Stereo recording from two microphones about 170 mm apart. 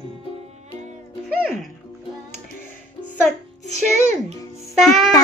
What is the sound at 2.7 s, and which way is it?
Music, 15° left (ahead or behind).